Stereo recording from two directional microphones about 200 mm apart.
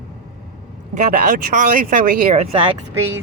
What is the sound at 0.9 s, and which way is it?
Speech, 40° right (ahead or behind).